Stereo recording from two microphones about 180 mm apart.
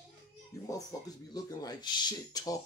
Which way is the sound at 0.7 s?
20° left (ahead or behind).